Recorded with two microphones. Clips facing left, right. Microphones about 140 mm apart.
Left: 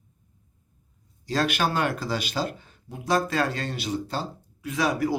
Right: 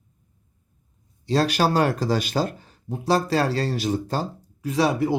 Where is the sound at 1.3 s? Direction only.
35° right (ahead or behind).